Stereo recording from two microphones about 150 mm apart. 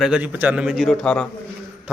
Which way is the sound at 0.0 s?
10° right (ahead or behind).